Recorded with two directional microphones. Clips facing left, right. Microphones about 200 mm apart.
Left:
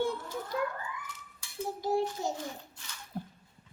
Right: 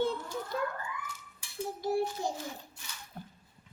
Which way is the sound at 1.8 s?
15° left (ahead or behind).